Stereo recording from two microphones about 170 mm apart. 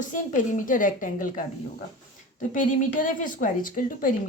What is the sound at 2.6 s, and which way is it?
Speech, 50° left (ahead or behind).